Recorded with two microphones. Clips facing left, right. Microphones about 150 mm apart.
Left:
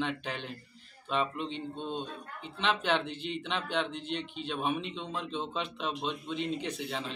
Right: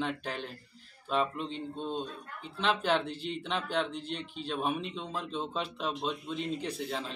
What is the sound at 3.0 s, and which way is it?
Speech, 40° right (ahead or behind).